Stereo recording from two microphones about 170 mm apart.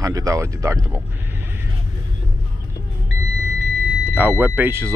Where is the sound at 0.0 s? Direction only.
20° right (ahead or behind).